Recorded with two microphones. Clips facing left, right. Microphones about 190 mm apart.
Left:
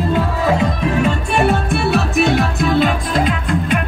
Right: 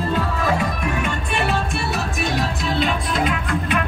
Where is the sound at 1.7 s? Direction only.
65° left (ahead or behind).